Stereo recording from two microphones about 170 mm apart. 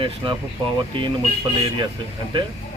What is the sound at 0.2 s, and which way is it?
Speech, 30° right (ahead or behind).